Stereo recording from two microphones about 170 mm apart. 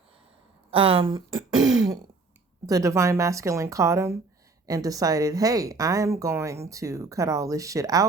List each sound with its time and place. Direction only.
0.7 s speech: 30° right (ahead or behind)